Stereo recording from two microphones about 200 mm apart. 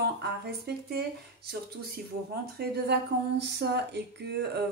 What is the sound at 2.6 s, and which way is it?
Speech, 50° right (ahead or behind).